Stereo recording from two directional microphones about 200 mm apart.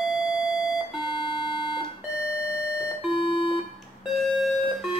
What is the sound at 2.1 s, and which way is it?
Doorbell, 60° right (ahead or behind).